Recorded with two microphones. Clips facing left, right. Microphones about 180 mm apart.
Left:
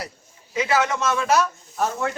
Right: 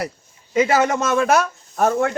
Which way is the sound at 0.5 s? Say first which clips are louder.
Right 5 dB; 45° right (ahead or behind).